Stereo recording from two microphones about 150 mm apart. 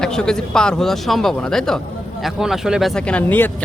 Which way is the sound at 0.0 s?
5° left (ahead or behind).